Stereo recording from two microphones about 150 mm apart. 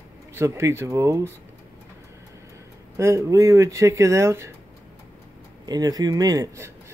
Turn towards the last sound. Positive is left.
turn(degrees=-20)  # may be behind; listen again after turning